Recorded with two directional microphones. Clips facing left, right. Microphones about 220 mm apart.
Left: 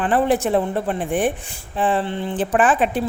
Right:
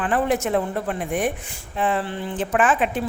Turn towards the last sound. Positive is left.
turn(degrees=35)  # may be behind; listen again after turning